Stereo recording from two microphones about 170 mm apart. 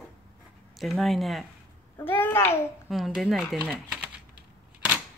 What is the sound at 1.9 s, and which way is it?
Speech, 10° left (ahead or behind).